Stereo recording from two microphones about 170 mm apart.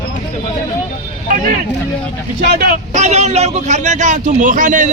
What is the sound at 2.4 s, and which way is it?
Speech, 65° right (ahead or behind).